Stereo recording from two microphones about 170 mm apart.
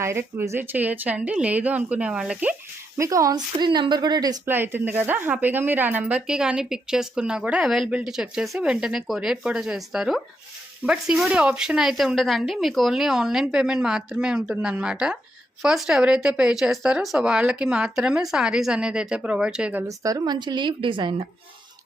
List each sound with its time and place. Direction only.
0.0 s a woman's voice: 15° right (ahead or behind)
3.0 s a woman's voice: 20° right (ahead or behind)
4.4 s speech: 10° right (ahead or behind)
20.0 s a woman's voice: 20° right (ahead or behind)